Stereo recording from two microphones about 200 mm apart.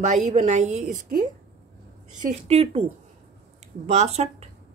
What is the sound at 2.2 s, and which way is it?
Speech, 30° right (ahead or behind).